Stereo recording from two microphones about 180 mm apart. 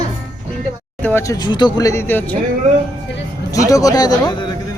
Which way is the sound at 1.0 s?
15° left (ahead or behind).